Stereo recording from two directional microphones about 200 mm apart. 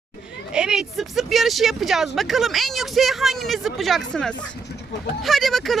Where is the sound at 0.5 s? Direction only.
5° right (ahead or behind).